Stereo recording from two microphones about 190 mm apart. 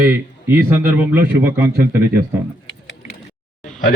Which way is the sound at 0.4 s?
10° right (ahead or behind).